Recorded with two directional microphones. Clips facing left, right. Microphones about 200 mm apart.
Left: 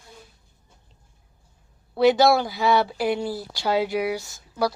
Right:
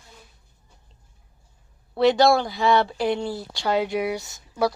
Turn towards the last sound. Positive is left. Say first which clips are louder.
# right 1 dB
turn(degrees=0)  # may be behind; listen again after turning